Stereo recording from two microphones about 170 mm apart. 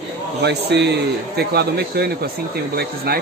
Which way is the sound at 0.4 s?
80° right.